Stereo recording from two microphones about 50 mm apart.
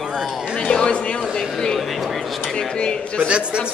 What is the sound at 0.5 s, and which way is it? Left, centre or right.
Speech, left.